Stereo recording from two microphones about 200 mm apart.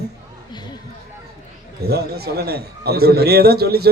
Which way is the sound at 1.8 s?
50° right (ahead or behind).